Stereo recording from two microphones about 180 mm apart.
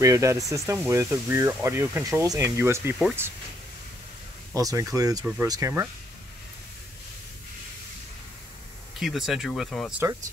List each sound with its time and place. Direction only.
0.0 s speech: 15° right (ahead or behind)
4.6 s speech: 20° right (ahead or behind)
9.0 s speech: centre (ahead or behind)